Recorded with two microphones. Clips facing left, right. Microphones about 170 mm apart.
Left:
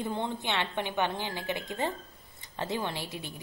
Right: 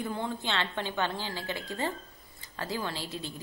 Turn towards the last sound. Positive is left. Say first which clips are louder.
# even
turn(degrees=15)  # may be behind; listen again after turning